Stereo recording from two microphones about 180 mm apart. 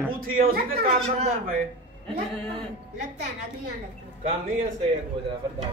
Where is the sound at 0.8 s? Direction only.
35° right (ahead or behind).